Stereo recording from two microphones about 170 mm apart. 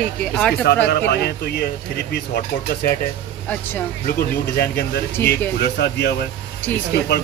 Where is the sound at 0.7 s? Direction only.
75° left (ahead or behind).